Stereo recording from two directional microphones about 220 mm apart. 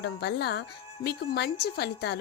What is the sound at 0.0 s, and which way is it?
A woman's voice, 50° left (ahead or behind).